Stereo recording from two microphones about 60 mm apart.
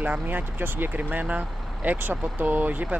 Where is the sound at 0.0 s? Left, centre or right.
Right.